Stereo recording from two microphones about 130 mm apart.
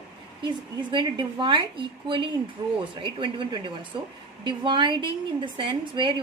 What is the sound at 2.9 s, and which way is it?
A woman's voice, 40° right (ahead or behind).